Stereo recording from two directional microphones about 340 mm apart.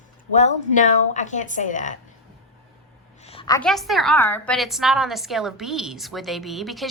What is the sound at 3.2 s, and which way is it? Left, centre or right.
A woman's voice, centre.